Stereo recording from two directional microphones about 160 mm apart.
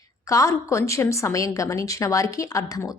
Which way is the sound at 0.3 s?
20° left (ahead or behind).